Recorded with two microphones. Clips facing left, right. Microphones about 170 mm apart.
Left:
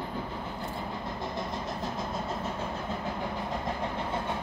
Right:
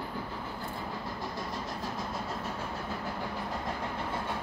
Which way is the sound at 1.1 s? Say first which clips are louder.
Left 3 dB; 20° left (ahead or behind).